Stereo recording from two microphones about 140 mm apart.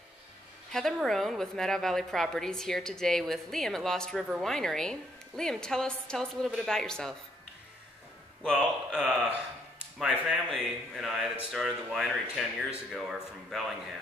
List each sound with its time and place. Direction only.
0.7 s a woman's voice: 5° left (ahead or behind)
8.5 s a woman's voice: 5° right (ahead or behind)
9.8 s a sound: 5° right (ahead or behind)
10.2 s a woman's voice: 5° right (ahead or behind)